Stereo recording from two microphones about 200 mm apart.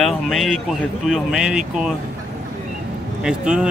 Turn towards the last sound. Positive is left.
turn(degrees=-5)  # may be behind; listen again after turning